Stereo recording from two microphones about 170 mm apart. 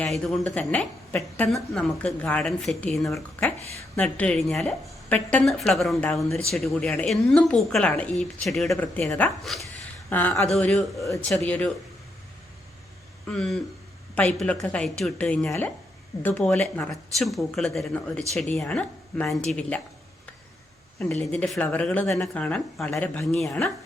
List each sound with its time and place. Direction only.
0.0 s a woman's voice: centre (ahead or behind)
11.0 s speech: 20° left (ahead or behind)
13.2 s a woman's voice: 5° left (ahead or behind)
21.0 s speech: 5° left (ahead or behind)